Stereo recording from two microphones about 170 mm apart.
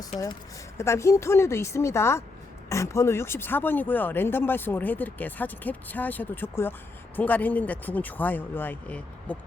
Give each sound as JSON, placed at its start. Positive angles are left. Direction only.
{"t": 0.1, "sound": "a woman's voice", "side_deg": 40}
{"t": 0.8, "sound": "speech", "side_deg": 15}